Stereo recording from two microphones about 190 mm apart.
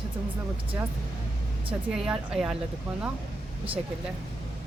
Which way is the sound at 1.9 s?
5° right (ahead or behind).